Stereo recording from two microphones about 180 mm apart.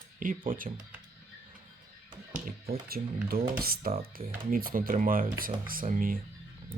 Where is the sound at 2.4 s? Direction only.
55° right (ahead or behind).